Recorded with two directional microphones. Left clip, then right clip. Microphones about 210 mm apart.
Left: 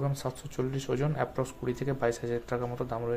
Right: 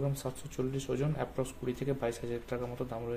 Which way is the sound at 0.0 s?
15° left (ahead or behind).